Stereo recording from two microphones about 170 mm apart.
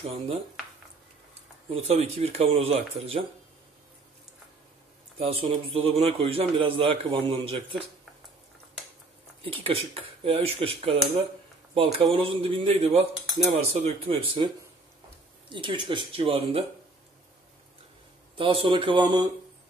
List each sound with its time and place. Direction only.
0.0 s a man's voice: 35° right (ahead or behind)
1.7 s a man's voice: 35° right (ahead or behind)
5.2 s a man's voice: 35° right (ahead or behind)
9.4 s a man's voice: 35° right (ahead or behind)
15.5 s speech: 30° right (ahead or behind)
18.3 s a man's voice: 30° right (ahead or behind)